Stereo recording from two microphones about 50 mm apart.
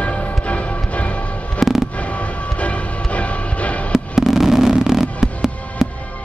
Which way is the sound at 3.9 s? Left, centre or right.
Centre.